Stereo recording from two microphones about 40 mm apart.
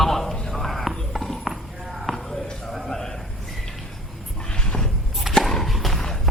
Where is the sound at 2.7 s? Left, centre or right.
Centre.